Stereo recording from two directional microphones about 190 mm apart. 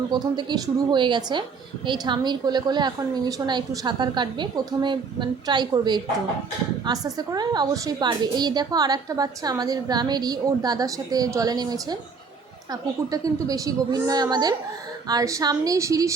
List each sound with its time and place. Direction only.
0.1 s a woman's voice: 25° right (ahead or behind)